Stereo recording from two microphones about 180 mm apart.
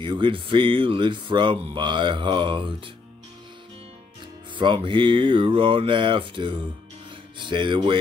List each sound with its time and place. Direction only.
0.0 s speech: 25° right (ahead or behind)
4.6 s speech: 25° right (ahead or behind)